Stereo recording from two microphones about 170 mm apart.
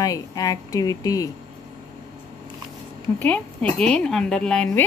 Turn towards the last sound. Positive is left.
turn(degrees=5)  # may be behind; listen again after turning